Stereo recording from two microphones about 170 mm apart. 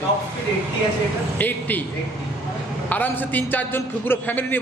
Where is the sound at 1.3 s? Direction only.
10° left (ahead or behind).